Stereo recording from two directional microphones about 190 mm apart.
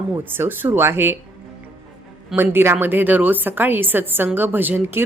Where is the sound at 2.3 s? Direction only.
10° right (ahead or behind).